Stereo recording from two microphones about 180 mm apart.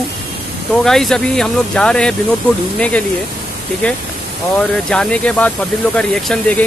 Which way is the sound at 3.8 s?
10° left (ahead or behind).